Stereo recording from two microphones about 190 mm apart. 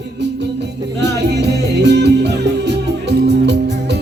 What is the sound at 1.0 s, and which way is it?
Music, 65° right (ahead or behind).